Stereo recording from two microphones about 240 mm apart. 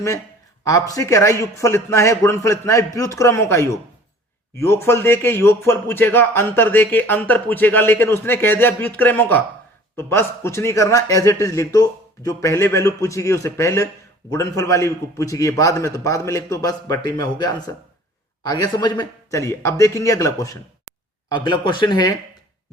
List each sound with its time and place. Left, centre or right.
0.6 s a man's voice: centre